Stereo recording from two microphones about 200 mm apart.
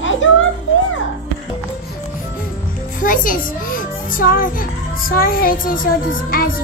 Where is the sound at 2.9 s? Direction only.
40° left (ahead or behind).